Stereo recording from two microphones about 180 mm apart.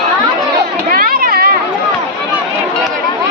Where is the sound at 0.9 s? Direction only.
50° right (ahead or behind).